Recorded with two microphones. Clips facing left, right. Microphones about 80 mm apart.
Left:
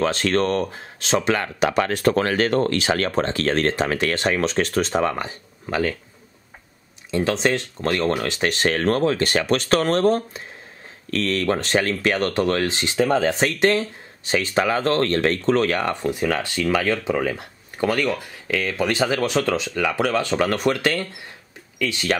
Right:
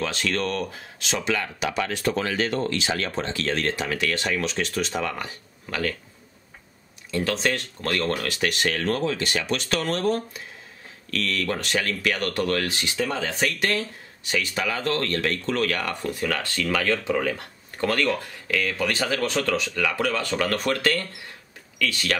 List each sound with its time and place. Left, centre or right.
0.0 s speech: left
1.1 s speech: left
7.1 s speech: left
12.9 s speech: left; by 18.6 s centre
18.6 s speech: left